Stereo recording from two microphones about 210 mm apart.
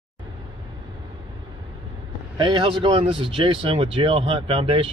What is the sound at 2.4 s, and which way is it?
Speech, 25° right (ahead or behind).